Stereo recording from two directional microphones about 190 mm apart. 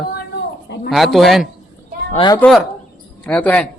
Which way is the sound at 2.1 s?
25° left (ahead or behind).